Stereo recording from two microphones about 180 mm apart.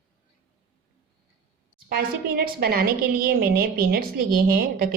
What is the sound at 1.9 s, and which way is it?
A woman's voice, 55° right (ahead or behind).